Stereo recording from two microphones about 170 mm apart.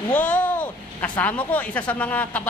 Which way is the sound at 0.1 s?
10° left (ahead or behind).